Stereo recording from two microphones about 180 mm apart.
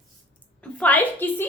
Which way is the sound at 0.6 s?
10° left (ahead or behind).